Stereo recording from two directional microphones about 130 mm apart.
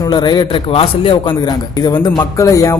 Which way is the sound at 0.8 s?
45° left (ahead or behind).